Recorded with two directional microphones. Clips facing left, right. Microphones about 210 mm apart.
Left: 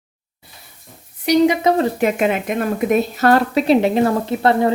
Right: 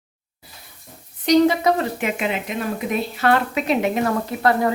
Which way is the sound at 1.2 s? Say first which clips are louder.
Left 1 dB; 10° left (ahead or behind).